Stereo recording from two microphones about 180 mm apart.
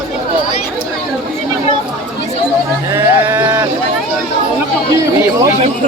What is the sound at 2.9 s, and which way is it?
Speech, 20° right (ahead or behind).